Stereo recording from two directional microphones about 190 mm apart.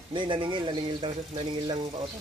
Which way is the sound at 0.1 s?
25° right (ahead or behind).